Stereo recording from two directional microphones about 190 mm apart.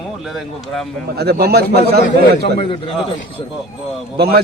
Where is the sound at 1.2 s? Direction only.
55° right (ahead or behind).